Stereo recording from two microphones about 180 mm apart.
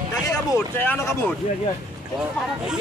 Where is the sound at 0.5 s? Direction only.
15° left (ahead or behind).